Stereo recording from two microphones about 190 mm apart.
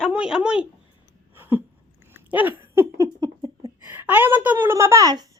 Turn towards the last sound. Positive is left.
turn(degrees=-20)  # may be behind; listen again after turning